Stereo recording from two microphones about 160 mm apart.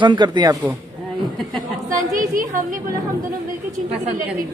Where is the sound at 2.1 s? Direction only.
55° right (ahead or behind).